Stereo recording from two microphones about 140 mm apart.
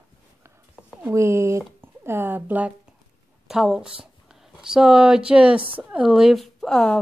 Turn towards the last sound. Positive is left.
turn(degrees=5)  # may be behind; listen again after turning